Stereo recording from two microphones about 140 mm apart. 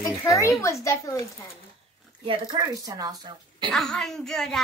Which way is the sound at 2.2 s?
40° right (ahead or behind).